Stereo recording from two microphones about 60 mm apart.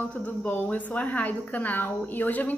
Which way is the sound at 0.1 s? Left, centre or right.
Centre.